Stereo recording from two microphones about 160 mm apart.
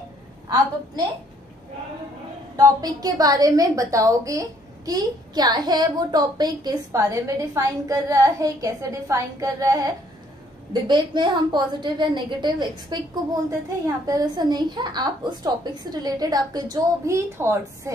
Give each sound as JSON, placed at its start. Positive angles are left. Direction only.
{"t": 2.5, "sound": "a woman's voice", "side_deg": -25}